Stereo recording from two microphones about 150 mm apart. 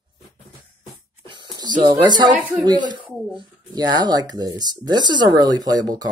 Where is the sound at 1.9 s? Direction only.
30° right (ahead or behind).